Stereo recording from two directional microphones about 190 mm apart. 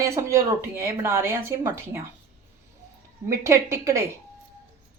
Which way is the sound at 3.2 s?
15° right (ahead or behind).